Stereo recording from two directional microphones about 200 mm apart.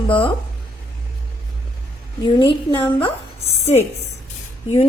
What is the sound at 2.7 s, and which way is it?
Speech, 10° left (ahead or behind).